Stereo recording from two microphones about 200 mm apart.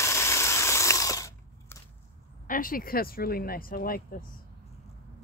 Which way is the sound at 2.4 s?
45° left (ahead or behind).